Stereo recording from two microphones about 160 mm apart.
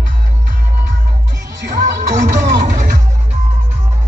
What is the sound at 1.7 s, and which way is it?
Music, 50° right (ahead or behind).